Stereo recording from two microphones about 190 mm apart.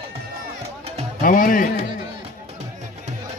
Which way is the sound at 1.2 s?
45° left (ahead or behind).